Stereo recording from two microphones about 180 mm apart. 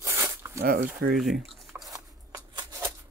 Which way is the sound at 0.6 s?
55° right (ahead or behind).